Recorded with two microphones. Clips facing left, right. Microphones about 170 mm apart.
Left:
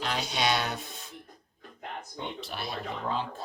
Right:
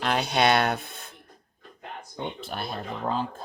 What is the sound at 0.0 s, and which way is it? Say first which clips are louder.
Speech: right 6 dB; 60° right (ahead or behind).